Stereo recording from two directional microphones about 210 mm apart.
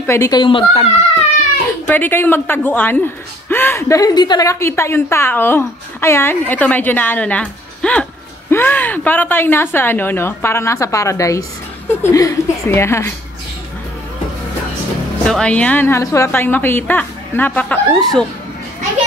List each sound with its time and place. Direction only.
0.0 s a child's voice: 15° left (ahead or behind)
1.9 s a woman's voice: 10° left (ahead or behind)
15.2 s a woman's voice: 5° left (ahead or behind)